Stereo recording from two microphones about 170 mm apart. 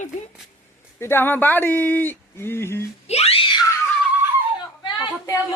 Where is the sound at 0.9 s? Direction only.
15° left (ahead or behind).